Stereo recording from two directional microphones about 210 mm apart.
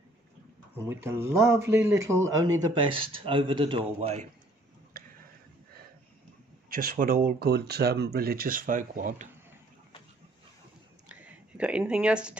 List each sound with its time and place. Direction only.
0.7 s speech: 10° right (ahead or behind)
2.7 s a man's voice: 25° right (ahead or behind)
6.7 s speech: 40° right (ahead or behind)
11.1 s a sound: 5° right (ahead or behind)